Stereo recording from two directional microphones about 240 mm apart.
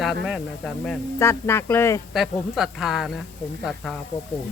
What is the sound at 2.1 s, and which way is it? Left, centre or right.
Speech, centre.